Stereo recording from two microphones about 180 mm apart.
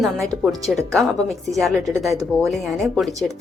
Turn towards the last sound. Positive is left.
turn(degrees=0)  # may be behind; listen again after turning